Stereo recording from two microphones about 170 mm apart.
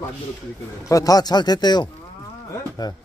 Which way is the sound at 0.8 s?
20° left (ahead or behind).